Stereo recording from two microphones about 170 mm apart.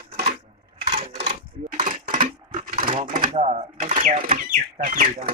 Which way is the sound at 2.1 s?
55° right (ahead or behind).